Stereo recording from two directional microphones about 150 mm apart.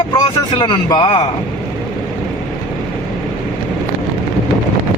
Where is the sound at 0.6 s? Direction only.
30° left (ahead or behind).